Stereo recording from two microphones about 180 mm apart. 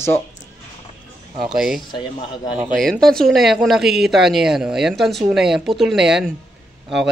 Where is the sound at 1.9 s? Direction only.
25° left (ahead or behind).